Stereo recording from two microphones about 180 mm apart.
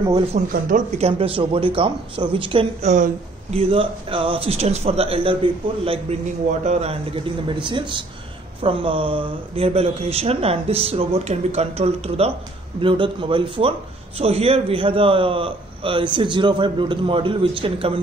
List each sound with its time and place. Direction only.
0.5 s speech: 50° right (ahead or behind)
7.4 s a man's voice: 25° right (ahead or behind)